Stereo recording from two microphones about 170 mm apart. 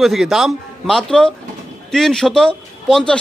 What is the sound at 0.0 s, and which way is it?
A man's voice, centre (ahead or behind).